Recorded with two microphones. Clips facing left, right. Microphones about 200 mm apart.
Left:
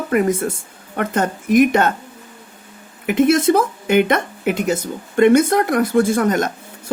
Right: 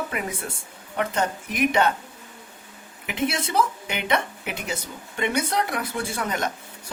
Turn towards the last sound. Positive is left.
turn(degrees=45)  # may be behind; listen again after turning